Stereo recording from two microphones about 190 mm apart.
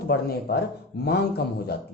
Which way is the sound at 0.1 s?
55° left (ahead or behind).